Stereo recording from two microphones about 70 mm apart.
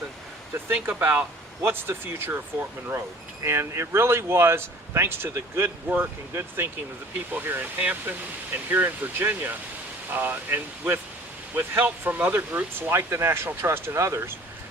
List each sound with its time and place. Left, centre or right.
0.7 s speech: right
7.3 s speech: right
12.9 s speech: right